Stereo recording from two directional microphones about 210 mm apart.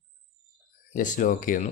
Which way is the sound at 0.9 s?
40° left (ahead or behind).